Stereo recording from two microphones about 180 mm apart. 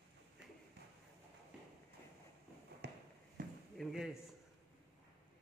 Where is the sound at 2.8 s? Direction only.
65° right (ahead or behind).